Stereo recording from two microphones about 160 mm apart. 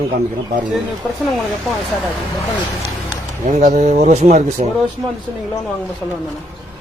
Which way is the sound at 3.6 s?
45° right (ahead or behind).